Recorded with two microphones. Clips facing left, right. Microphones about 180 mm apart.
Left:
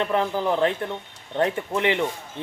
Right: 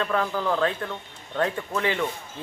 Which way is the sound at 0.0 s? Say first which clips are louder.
Left 2 dB; 20° left (ahead or behind).